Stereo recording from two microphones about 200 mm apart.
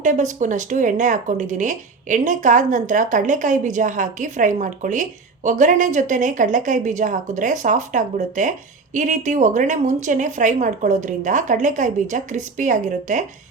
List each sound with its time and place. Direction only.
0.0 s speech: 40° right (ahead or behind)